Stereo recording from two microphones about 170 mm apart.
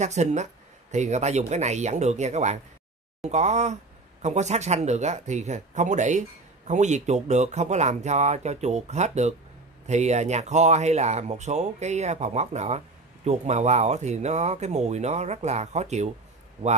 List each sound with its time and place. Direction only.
0.0 s speech: 40° right (ahead or behind)